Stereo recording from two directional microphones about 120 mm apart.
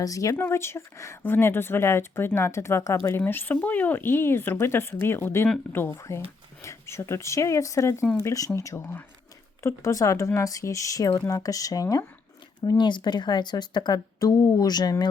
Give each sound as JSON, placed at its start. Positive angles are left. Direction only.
{"t": 0.0, "sound": "speech", "side_deg": 30}
{"t": 12.6, "sound": "a woman's voice", "side_deg": 40}